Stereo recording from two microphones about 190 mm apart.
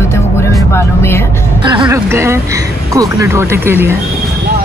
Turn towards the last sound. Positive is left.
turn(degrees=-10)  # may be behind; listen again after turning